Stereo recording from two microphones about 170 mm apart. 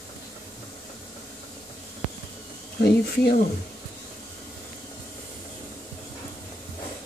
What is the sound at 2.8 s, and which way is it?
Speech, 70° left (ahead or behind).